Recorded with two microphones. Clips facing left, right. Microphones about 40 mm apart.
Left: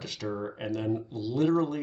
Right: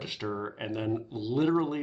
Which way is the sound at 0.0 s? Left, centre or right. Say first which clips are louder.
Even; right.